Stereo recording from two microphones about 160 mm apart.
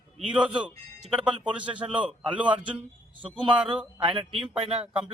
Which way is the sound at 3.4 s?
30° right (ahead or behind).